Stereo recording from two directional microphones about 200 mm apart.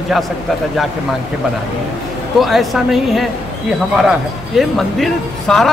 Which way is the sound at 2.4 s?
Centre (ahead or behind).